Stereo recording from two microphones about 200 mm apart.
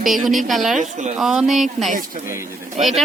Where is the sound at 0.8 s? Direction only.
35° right (ahead or behind).